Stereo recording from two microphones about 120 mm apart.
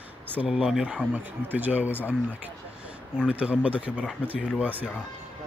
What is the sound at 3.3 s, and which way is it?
Speech, 10° right (ahead or behind).